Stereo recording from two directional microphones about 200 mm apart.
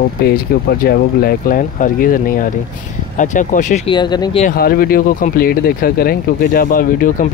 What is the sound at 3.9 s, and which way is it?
Speech, 20° left (ahead or behind).